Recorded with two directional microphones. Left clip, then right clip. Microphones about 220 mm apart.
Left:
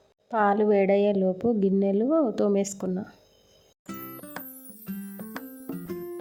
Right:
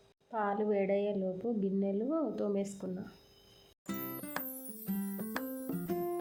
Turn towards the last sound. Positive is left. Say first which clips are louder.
# left 1 dB
turn(degrees=0)  # may be behind; listen again after turning